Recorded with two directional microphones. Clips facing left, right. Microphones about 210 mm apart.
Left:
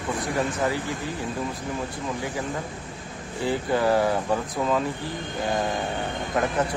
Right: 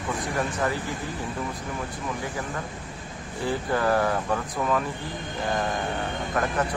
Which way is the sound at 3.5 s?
15° left (ahead or behind).